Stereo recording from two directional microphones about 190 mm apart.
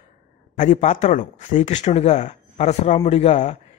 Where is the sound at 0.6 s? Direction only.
40° left (ahead or behind).